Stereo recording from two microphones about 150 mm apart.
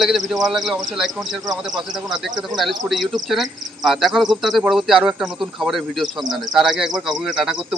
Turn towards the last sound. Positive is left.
turn(degrees=0)  # may be behind; listen again after turning